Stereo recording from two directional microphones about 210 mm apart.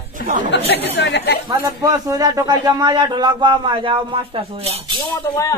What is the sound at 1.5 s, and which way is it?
Speech, 20° right (ahead or behind).